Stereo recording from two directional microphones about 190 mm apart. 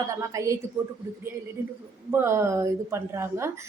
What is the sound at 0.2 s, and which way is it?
Speech, 15° right (ahead or behind).